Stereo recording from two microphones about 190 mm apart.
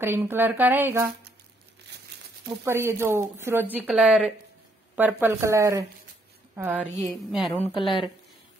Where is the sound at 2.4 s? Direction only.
15° right (ahead or behind).